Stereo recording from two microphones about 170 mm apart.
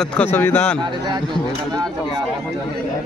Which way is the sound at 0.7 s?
25° right (ahead or behind).